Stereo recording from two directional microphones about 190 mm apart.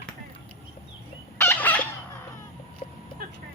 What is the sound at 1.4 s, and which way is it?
Fowl, 10° left (ahead or behind).